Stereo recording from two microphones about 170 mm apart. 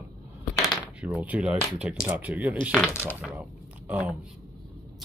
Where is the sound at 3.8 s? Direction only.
10° right (ahead or behind).